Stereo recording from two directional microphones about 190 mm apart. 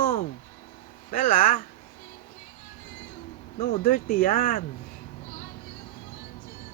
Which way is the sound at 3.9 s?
50° left (ahead or behind).